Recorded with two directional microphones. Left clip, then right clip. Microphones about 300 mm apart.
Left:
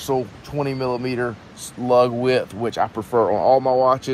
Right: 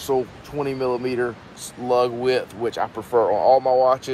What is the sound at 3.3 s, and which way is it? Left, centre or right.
Speech, left.